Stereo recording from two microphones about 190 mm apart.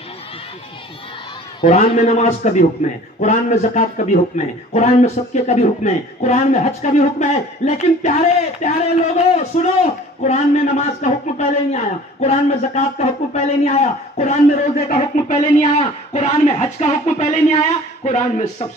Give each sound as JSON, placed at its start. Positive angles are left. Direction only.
{"t": 1.6, "sound": "a man's voice", "side_deg": 30}